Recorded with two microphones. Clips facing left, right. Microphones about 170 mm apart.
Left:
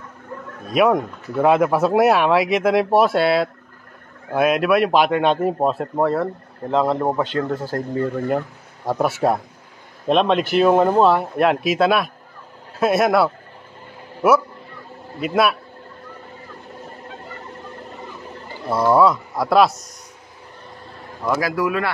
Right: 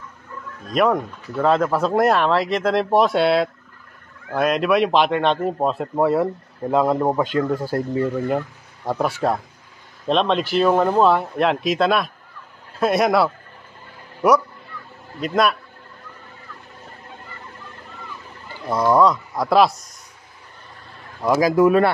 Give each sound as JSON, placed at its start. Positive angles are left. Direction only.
{"t": 0.7, "sound": "a man's voice", "side_deg": 10}
{"t": 8.3, "sound": "a man's voice", "side_deg": 0}
{"t": 18.7, "sound": "a man's voice", "side_deg": 5}
{"t": 21.2, "sound": "speech", "side_deg": -15}
{"t": 21.6, "sound": "speech", "side_deg": -35}